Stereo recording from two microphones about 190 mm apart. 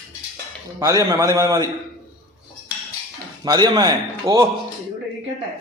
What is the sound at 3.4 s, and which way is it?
A man's voice, 20° right (ahead or behind).